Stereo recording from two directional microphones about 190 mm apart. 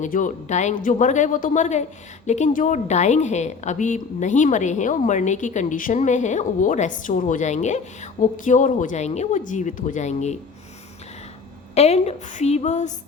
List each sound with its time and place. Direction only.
0.0 s a woman's voice: 40° left (ahead or behind)
11.7 s a woman's voice: 35° left (ahead or behind)